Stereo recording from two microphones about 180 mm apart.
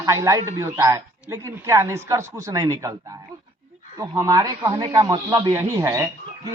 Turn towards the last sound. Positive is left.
turn(degrees=-15)  # may be behind; listen again after turning